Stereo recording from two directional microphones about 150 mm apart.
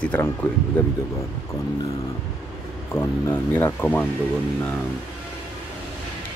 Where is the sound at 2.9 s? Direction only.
15° left (ahead or behind).